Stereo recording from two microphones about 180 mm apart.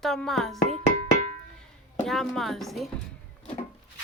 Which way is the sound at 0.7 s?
40° right (ahead or behind).